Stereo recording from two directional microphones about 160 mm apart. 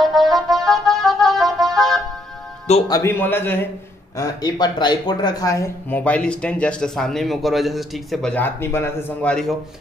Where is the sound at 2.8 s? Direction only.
20° left (ahead or behind).